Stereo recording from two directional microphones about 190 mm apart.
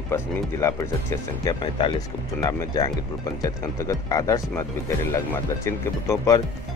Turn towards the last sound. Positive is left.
turn(degrees=15)  # may be behind; listen again after turning